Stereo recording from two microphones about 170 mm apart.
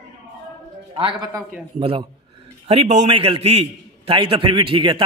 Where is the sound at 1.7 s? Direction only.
30° right (ahead or behind).